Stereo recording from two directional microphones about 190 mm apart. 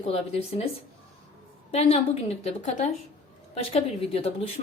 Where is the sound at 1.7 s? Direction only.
35° left (ahead or behind).